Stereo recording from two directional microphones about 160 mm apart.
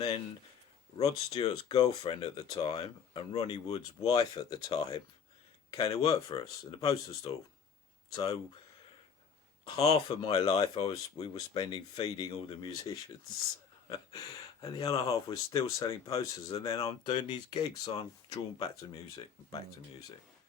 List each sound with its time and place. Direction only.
0.9 s speech: 40° left (ahead or behind)
1.8 s speech: 25° left (ahead or behind)
9.6 s speech: 25° left (ahead or behind)
14.1 s speech: 25° left (ahead or behind)